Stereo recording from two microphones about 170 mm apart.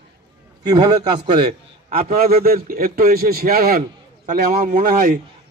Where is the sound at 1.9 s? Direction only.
60° right (ahead or behind).